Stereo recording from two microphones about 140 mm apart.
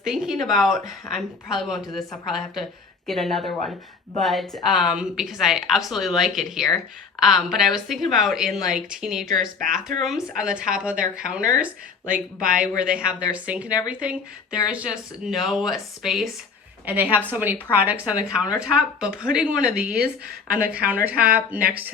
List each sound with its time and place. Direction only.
0.0 s speech: centre (ahead or behind)
9.2 s speech: 75° right (ahead or behind)
10.0 s speech: centre (ahead or behind)
16.8 s speech: 10° right (ahead or behind)
20.0 s a woman's voice: 90° right
20.8 s speech: 10° right (ahead or behind)